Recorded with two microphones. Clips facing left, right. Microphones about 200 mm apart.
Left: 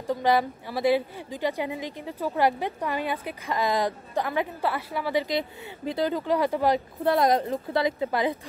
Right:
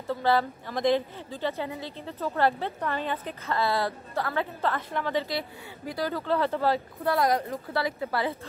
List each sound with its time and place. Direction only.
0.0 s a woman's voice: 15° left (ahead or behind)